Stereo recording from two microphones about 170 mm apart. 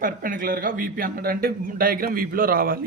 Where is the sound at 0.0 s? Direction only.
55° right (ahead or behind).